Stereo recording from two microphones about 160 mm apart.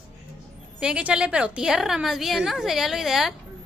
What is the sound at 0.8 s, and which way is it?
A woman's voice, 5° right (ahead or behind).